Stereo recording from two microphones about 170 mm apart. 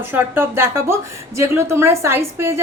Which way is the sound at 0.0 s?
15° right (ahead or behind).